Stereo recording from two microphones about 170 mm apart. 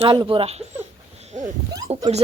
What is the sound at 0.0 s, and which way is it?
Speech, 30° right (ahead or behind).